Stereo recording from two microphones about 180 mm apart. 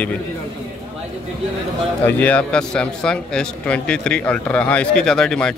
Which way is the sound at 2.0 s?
10° left (ahead or behind).